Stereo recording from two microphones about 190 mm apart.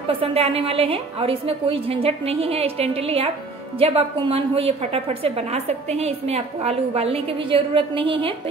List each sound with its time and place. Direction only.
0.2 s a woman's voice: 30° right (ahead or behind)